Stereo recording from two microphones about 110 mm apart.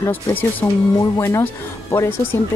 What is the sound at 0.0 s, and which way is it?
Speech, 15° left (ahead or behind).